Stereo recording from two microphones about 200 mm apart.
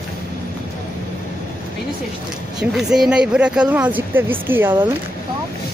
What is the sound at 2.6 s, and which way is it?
Speech, centre (ahead or behind).